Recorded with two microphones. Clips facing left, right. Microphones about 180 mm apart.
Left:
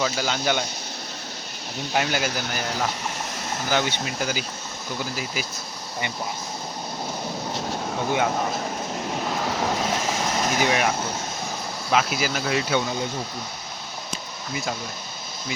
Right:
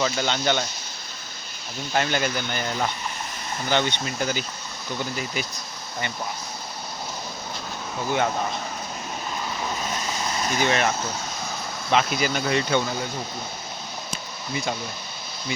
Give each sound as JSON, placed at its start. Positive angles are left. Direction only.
{"t": 0.0, "sound": "speech", "side_deg": 5}
{"t": 1.9, "sound": "speech", "side_deg": 5}
{"t": 9.3, "sound": "vehicle", "side_deg": 75}
{"t": 10.6, "sound": "speech", "side_deg": 10}
{"t": 14.5, "sound": "speech", "side_deg": 0}